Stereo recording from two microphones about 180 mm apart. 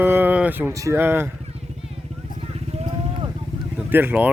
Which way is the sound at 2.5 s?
35° right (ahead or behind).